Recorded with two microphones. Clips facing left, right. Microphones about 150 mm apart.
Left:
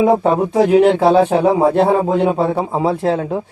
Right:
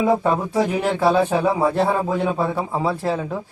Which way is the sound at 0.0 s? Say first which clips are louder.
Left 5 dB; 20° left (ahead or behind).